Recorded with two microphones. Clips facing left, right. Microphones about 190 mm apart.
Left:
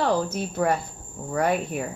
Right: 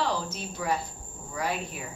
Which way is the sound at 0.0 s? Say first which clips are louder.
Left 7 dB; 55° left (ahead or behind).